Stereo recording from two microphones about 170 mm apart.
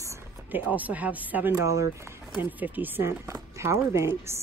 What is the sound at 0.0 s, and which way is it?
Speech, 15° right (ahead or behind).